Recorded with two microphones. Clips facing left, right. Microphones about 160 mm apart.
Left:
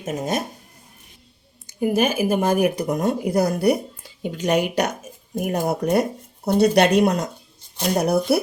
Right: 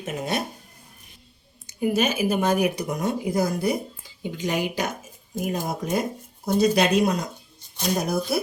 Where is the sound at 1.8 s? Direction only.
50° left (ahead or behind).